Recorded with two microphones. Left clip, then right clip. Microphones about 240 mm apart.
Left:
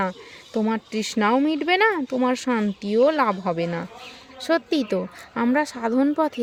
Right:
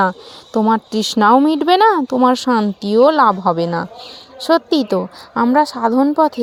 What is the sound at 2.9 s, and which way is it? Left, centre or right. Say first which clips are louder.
Speech: right 7 dB; centre.